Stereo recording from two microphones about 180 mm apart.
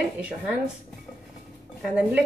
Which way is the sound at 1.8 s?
5° right (ahead or behind).